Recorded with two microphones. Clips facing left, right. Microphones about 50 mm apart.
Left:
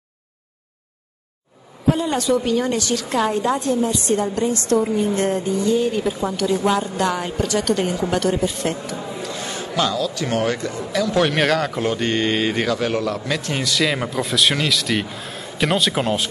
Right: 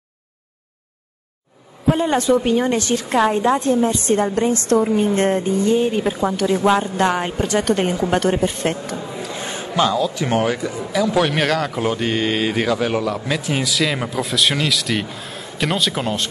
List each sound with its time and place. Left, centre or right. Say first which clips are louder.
2.0 s a woman's voice: right 3 dB; right
9.3 s a man's voice: right 1 dB; right; by 16.3 s centre